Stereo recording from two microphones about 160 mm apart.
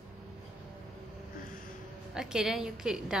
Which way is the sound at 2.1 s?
5° right (ahead or behind).